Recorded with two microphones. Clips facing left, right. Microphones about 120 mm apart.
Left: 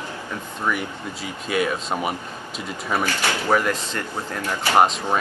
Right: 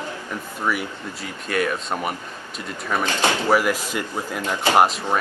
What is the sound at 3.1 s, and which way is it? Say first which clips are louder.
Speech: right 3 dB; 25° right (ahead or behind).